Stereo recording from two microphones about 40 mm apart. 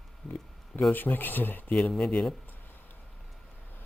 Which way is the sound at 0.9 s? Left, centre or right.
Left.